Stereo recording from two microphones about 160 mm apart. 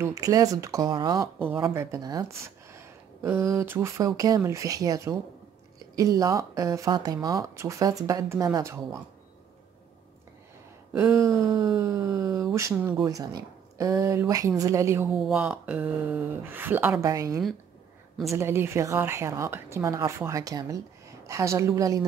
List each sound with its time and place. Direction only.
0.0 s speech: 20° right (ahead or behind)
1.4 s a woman's voice: 15° right (ahead or behind)
10.9 s speech: 15° right (ahead or behind)
12.7 s speech: 5° right (ahead or behind)
13.0 s speech: 25° right (ahead or behind)
15.2 s a woman's voice: 5° right (ahead or behind); by 22.0 s 20° right (ahead or behind)